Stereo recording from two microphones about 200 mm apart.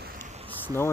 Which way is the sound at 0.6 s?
10° left (ahead or behind).